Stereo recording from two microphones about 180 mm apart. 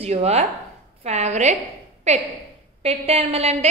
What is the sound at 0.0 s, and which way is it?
A woman's voice, 35° right (ahead or behind).